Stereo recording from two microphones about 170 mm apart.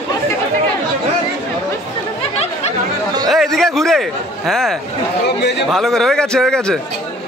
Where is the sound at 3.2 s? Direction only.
Centre (ahead or behind).